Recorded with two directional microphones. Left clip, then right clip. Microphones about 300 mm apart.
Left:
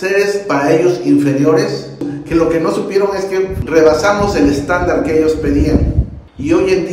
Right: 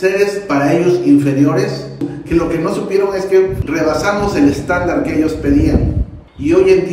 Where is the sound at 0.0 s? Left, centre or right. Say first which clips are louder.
Even; centre.